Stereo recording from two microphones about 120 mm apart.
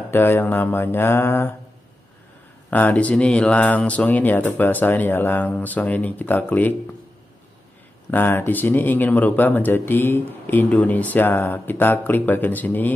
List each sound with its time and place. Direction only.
0.1 s speech: 15° left (ahead or behind)
2.7 s speech: 10° left (ahead or behind)
8.1 s speech: 15° left (ahead or behind)